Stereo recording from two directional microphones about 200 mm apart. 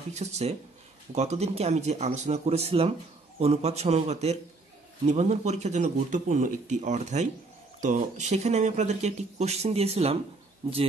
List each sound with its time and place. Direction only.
0.1 s speech: 35° right (ahead or behind)